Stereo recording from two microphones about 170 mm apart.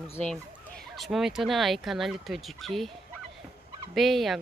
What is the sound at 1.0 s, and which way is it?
Speech, centre (ahead or behind).